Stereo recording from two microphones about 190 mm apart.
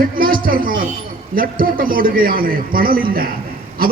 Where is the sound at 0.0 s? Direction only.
50° right (ahead or behind).